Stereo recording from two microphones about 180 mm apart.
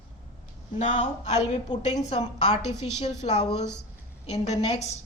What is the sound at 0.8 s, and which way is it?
A woman's voice, 40° left (ahead or behind).